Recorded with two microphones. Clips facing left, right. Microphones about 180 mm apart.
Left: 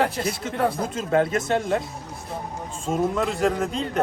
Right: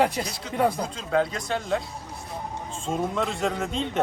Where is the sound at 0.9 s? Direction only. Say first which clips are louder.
Left 3 dB; 50° left (ahead or behind).